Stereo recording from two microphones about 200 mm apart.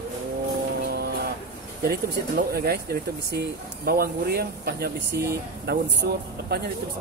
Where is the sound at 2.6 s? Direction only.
50° right (ahead or behind).